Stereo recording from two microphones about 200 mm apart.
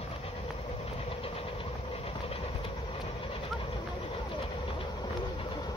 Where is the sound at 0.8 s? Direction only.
30° left (ahead or behind).